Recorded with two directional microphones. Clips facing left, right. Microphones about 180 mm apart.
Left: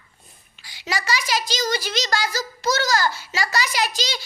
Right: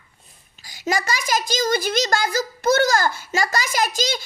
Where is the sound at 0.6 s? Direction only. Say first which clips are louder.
Right 5 dB; 45° right (ahead or behind).